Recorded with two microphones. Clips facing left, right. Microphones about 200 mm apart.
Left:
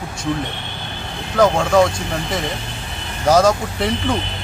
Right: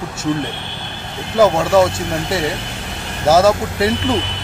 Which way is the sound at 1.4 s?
5° right (ahead or behind).